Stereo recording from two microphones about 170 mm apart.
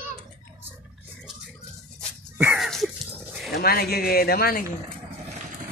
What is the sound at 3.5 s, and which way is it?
Speech, 65° left (ahead or behind).